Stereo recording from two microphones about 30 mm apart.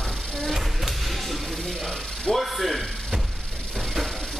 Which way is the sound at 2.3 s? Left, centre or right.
Centre.